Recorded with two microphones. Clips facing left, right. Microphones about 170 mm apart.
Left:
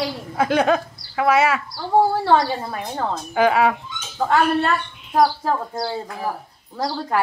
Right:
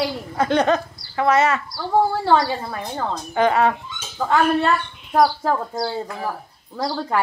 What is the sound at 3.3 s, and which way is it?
Speech, 5° left (ahead or behind).